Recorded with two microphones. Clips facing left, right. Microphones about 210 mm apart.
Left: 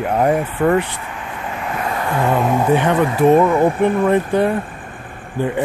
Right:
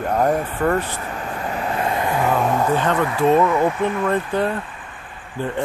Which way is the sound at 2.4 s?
15° left (ahead or behind).